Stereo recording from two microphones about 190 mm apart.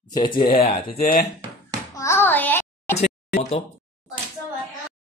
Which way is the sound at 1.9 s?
15° left (ahead or behind).